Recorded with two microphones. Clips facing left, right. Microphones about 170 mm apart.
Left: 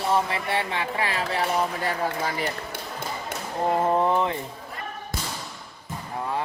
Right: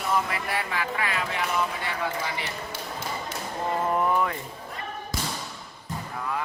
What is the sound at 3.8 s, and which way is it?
Speech, 25° left (ahead or behind).